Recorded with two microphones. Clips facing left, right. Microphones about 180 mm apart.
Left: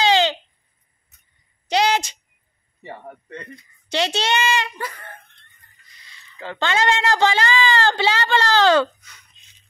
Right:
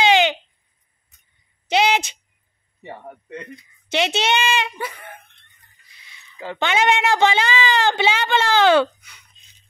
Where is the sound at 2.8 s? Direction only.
10° right (ahead or behind).